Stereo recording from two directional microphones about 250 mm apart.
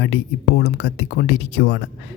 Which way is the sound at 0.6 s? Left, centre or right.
Left.